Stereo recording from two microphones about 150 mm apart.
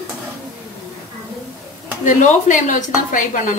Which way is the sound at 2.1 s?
55° left (ahead or behind).